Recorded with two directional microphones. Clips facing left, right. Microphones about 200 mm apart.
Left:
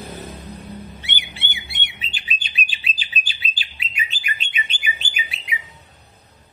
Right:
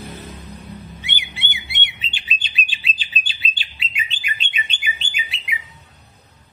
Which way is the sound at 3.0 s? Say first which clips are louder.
Even; 25° right (ahead or behind).